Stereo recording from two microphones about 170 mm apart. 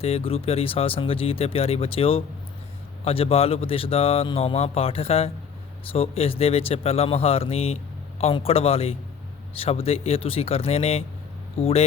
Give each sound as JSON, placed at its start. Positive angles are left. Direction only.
{"t": 0.0, "sound": "speech", "side_deg": 35}